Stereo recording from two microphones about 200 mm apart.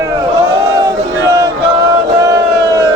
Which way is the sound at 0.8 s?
15° right (ahead or behind).